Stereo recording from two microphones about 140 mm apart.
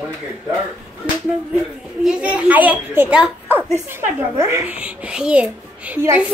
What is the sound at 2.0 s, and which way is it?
A child's voice, 5° right (ahead or behind).